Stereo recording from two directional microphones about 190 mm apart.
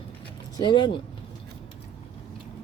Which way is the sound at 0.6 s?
25° left (ahead or behind).